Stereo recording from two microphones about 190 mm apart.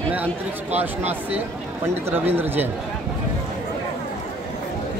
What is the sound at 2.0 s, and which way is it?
Speech, 10° right (ahead or behind).